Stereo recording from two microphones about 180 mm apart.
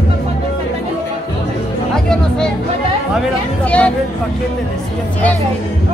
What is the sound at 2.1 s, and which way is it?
Speech, 5° left (ahead or behind).